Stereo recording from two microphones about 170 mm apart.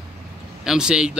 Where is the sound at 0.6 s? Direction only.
5° right (ahead or behind).